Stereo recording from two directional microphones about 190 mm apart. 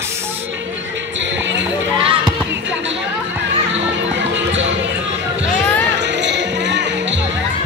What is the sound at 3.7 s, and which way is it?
Music, 75° right (ahead or behind).